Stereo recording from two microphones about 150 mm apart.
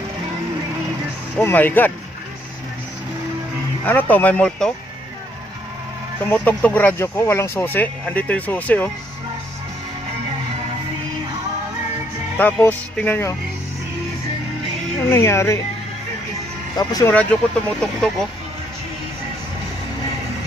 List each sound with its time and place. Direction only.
1.4 s speech: 10° left (ahead or behind)
3.8 s speech: 10° left (ahead or behind)
6.3 s speech: 10° left (ahead or behind)
12.4 s speech: 10° left (ahead or behind)
15.0 s speech: 20° left (ahead or behind)
16.7 s speech: 25° left (ahead or behind)
17.1 s speech: 5° left (ahead or behind)